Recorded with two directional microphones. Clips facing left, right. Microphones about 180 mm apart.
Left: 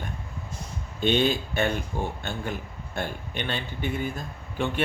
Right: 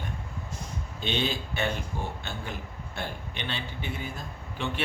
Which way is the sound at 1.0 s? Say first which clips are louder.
Left 7 dB; 50° left (ahead or behind).